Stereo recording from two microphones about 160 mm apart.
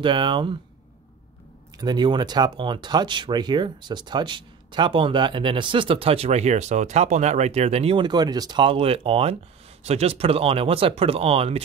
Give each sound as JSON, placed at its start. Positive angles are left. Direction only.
{"t": 0.0, "sound": "speech", "side_deg": -30}
{"t": 1.8, "sound": "speech", "side_deg": -25}